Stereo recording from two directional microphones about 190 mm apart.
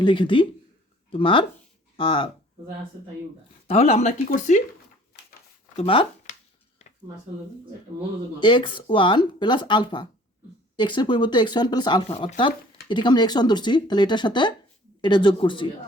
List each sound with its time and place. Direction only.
0.0 s speech: 25° left (ahead or behind)
3.7 s speech: 35° left (ahead or behind)
5.7 s speech: 30° left (ahead or behind)
8.4 s speech: 25° left (ahead or behind)